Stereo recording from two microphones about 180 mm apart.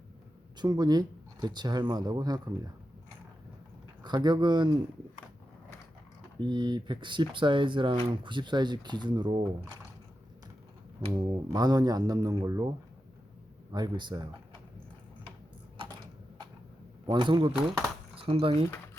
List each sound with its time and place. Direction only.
0.5 s speech: 25° right (ahead or behind)
4.0 s speech: 25° right (ahead or behind)
6.4 s speech: 25° right (ahead or behind)
11.5 s speech: 20° right (ahead or behind)
13.7 s speech: 25° right (ahead or behind)
17.1 s speech: 25° right (ahead or behind)
17.5 s speech: centre (ahead or behind)
18.2 s speech: 30° right (ahead or behind)